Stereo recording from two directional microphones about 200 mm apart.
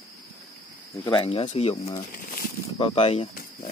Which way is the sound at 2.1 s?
45° left (ahead or behind).